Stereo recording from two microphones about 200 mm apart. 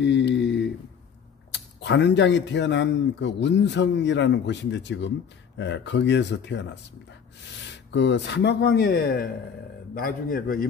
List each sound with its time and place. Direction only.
0.0 s a sound: 60° left (ahead or behind)
1.5 s speech: 60° left (ahead or behind)
7.9 s a man's voice: 60° left (ahead or behind); by 10.7 s 45° left (ahead or behind)